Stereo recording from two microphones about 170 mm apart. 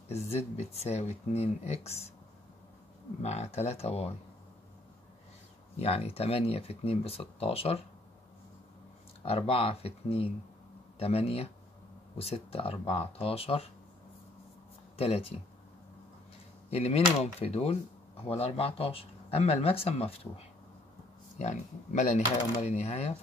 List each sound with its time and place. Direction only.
0.1 s speech: 40° left (ahead or behind)
3.2 s speech: 40° left (ahead or behind)
5.8 s speech: 35° left (ahead or behind)
9.2 s speech: 35° left (ahead or behind)
15.0 s speech: 35° left (ahead or behind)
16.7 s speech: 35° left (ahead or behind)